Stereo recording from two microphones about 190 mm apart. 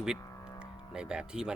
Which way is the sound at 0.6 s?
5° right (ahead or behind).